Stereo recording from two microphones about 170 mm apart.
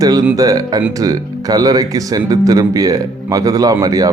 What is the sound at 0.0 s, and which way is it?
Speech, 20° right (ahead or behind).